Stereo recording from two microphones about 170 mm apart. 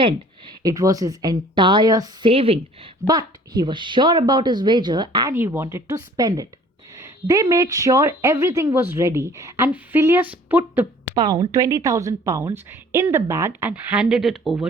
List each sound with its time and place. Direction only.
0.0 s a woman's voice: 25° right (ahead or behind)
2.3 s a woman's voice: 35° right (ahead or behind)
3.1 s a woman's voice: 25° right (ahead or behind)
5.3 s a woman's voice: 15° right (ahead or behind)
6.9 s a sound: 20° right (ahead or behind)
7.5 s a woman's voice: 20° right (ahead or behind)
11.1 s a woman's voice: 25° right (ahead or behind); by 14.7 s 5° right (ahead or behind)